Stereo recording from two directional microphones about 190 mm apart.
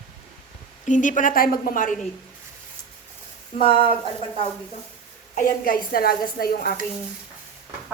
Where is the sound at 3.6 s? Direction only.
30° left (ahead or behind).